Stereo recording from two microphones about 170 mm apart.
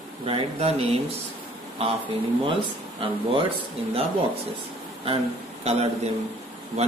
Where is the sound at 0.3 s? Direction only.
35° right (ahead or behind).